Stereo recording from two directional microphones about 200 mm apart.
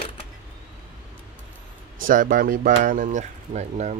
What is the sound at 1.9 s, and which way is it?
Speech, 45° right (ahead or behind).